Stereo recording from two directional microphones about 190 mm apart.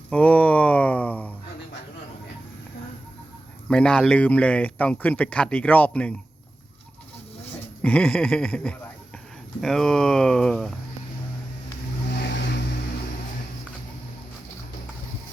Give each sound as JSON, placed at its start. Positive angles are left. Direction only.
{"t": 0.1, "sound": "a sound", "side_deg": 5}
{"t": 3.7, "sound": "speech", "side_deg": 5}
{"t": 7.8, "sound": "speech", "side_deg": 10}
{"t": 12.1, "sound": "vehicle", "side_deg": 65}